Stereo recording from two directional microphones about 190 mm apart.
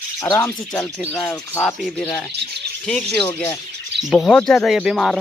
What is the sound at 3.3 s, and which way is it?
Speech, 15° left (ahead or behind).